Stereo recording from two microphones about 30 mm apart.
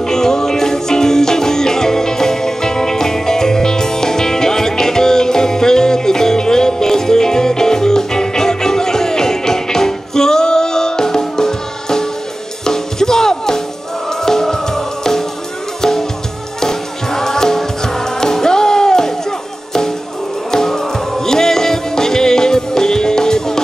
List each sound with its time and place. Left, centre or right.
0.0 s music: centre
20.6 s music: centre